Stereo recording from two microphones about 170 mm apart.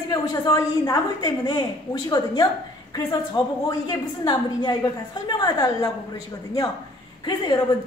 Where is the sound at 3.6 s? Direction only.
25° left (ahead or behind).